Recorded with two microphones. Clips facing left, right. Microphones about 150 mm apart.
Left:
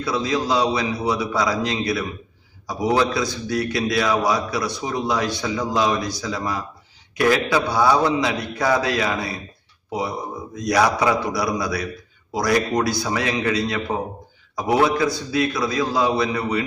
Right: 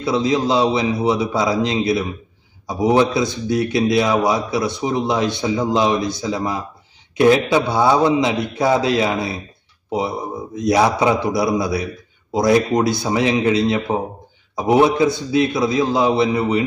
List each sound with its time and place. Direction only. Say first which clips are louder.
0.0 s a man's voice: right 5 dB; 25° right (ahead or behind)
10.5 s a man's voice: right 3 dB; 25° right (ahead or behind)